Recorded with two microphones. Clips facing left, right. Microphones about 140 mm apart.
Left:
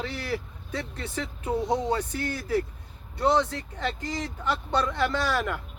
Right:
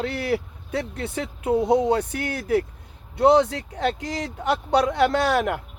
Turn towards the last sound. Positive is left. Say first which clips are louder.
# right 6 dB
turn(degrees=-65)  # may be behind; listen again after turning